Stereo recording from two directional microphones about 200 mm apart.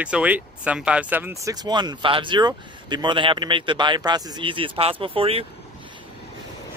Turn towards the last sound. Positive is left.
turn(degrees=-30)  # may be behind; listen again after turning